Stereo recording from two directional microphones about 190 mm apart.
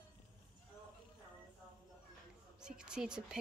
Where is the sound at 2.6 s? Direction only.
5° right (ahead or behind).